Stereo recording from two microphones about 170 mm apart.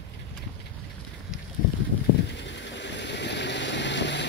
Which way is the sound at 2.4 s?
90° left.